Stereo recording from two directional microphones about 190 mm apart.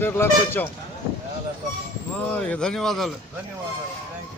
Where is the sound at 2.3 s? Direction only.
5° left (ahead or behind).